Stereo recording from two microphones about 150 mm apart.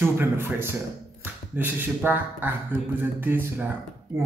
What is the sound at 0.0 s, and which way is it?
Speech, 15° right (ahead or behind).